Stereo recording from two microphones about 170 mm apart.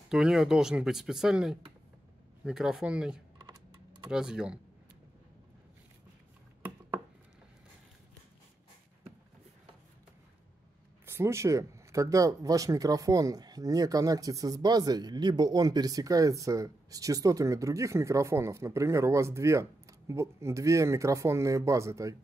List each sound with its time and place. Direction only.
0.1 s speech: 5° right (ahead or behind)
11.1 s speech: 15° right (ahead or behind)